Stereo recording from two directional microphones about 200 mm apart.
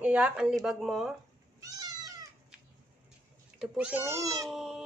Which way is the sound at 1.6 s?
20° right (ahead or behind).